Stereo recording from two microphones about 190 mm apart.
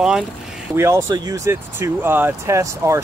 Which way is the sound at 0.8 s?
15° right (ahead or behind).